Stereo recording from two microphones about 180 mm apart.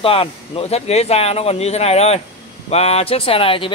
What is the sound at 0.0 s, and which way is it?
Speech, 30° left (ahead or behind).